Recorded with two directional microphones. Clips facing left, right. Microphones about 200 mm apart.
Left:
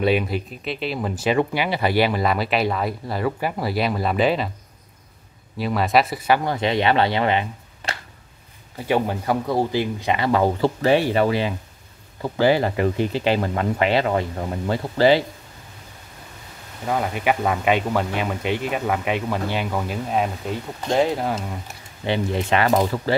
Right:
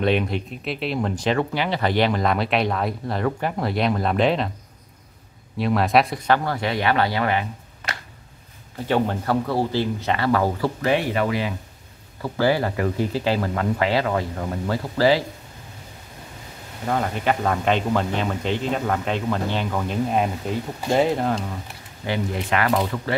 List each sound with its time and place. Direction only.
0.0 s speech: 5° left (ahead or behind)
5.6 s speech: centre (ahead or behind)
6.4 s speech: 20° left (ahead or behind)
8.7 s speech: 10° left (ahead or behind)
16.8 s speech: 5° left (ahead or behind)
22.0 s speech: 25° left (ahead or behind)